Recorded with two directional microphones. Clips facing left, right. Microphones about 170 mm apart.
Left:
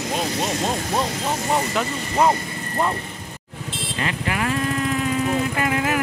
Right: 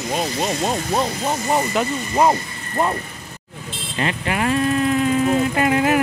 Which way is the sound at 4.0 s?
25° right (ahead or behind).